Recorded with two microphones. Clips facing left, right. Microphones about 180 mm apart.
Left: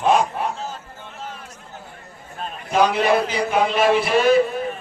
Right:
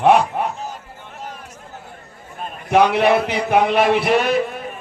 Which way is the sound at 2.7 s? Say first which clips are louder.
Right 3 dB; 65° right (ahead or behind).